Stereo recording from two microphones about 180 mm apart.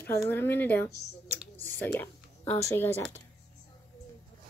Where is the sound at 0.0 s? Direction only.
15° left (ahead or behind).